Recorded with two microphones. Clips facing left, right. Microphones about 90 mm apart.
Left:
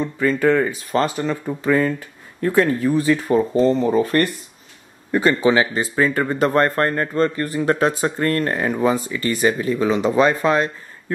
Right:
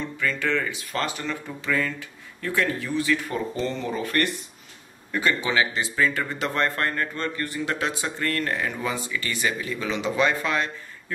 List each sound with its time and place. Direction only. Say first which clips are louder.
0.0 s speech: left 9 dB; 35° left (ahead or behind)